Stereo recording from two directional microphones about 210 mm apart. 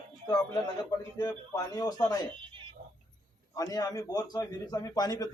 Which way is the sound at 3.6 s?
15° left (ahead or behind).